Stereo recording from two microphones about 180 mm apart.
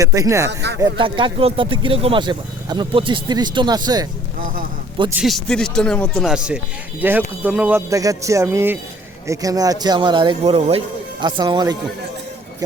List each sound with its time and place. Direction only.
0.0 s speech: 20° right (ahead or behind)
0.8 s speech: 25° right (ahead or behind)
4.4 s speech: 50° right (ahead or behind)
5.2 s speech: centre (ahead or behind); by 11.8 s 20° right (ahead or behind)